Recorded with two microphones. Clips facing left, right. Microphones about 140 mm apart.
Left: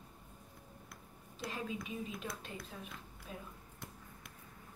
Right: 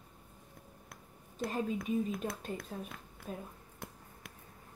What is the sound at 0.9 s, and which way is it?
Speech, 50° right (ahead or behind).